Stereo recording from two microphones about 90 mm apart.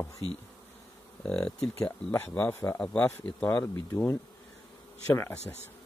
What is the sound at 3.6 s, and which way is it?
A man's voice, 30° left (ahead or behind).